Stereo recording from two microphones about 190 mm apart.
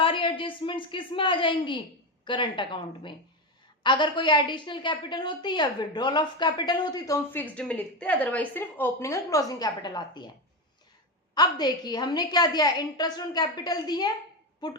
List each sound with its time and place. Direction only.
0.0 s a woman's voice: 25° left (ahead or behind)
11.3 s a woman's voice: 20° left (ahead or behind)